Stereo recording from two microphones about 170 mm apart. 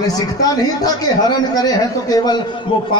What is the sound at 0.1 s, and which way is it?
A man's voice, 20° left (ahead or behind).